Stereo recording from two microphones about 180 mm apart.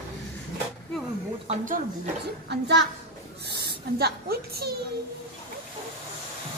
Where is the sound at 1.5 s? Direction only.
45° right (ahead or behind).